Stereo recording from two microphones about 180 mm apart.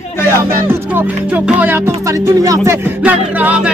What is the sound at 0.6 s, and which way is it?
Music, 10° right (ahead or behind).